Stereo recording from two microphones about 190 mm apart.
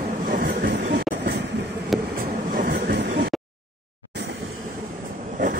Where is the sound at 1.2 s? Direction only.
60° right (ahead or behind).